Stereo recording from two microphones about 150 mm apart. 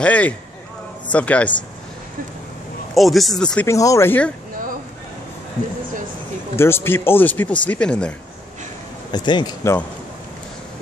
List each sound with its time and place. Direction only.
0.0 s speech: 10° left (ahead or behind)
2.9 s speech: centre (ahead or behind)
3.6 s speech: 20° left (ahead or behind)
6.5 s speech: 15° left (ahead or behind)
9.1 s speech: 30° left (ahead or behind)